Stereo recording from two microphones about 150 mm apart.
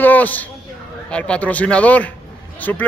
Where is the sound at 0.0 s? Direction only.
10° left (ahead or behind).